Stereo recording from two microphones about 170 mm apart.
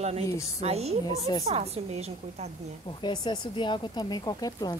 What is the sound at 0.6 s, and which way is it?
A woman's voice, 35° right (ahead or behind).